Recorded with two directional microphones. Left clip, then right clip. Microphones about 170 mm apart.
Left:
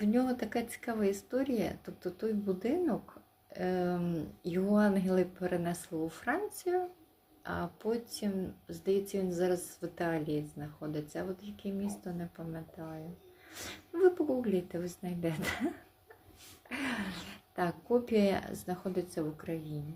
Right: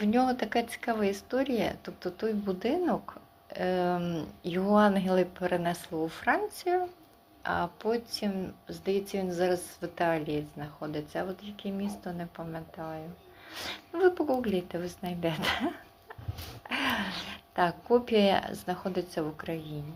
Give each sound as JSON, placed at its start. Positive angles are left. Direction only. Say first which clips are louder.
{"t": 0.0, "sound": "speech", "louder": "right 5 dB", "side_deg": 25}
{"t": 13.5, "sound": "speech", "louder": "right 5 dB", "side_deg": 30}